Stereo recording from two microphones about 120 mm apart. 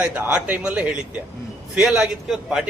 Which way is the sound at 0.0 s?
15° right (ahead or behind).